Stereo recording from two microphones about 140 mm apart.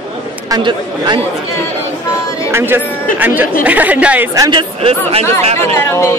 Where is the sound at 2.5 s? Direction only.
15° right (ahead or behind).